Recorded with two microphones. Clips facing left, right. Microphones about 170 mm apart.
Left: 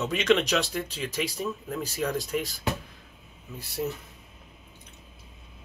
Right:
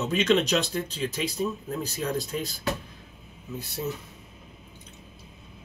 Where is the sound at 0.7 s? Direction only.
25° right (ahead or behind).